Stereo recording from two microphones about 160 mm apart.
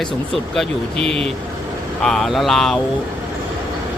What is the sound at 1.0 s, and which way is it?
Speech, 40° right (ahead or behind).